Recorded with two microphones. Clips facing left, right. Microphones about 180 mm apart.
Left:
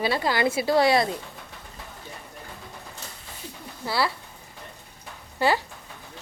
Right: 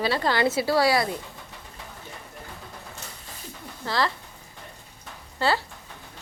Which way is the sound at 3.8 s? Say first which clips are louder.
Even; 10° left (ahead or behind).